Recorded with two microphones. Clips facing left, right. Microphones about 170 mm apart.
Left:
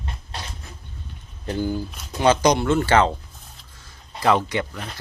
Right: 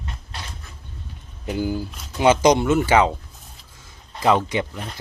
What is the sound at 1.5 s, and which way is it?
Speech, 10° right (ahead or behind).